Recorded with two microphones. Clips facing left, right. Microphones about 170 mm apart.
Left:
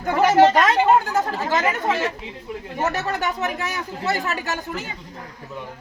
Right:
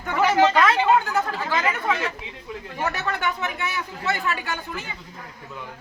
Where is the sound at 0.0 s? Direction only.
45° left (ahead or behind).